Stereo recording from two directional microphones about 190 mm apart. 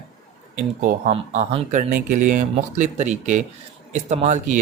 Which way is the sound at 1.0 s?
30° right (ahead or behind).